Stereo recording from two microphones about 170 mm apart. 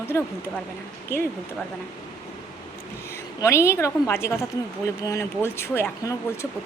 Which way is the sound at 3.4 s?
15° left (ahead or behind).